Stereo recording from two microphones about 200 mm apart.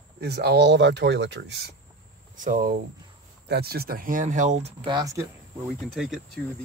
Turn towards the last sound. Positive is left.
turn(degrees=-5)  # may be behind; listen again after turning